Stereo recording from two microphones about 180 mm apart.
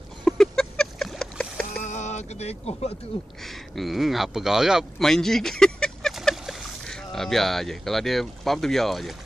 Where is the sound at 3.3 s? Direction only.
Centre (ahead or behind).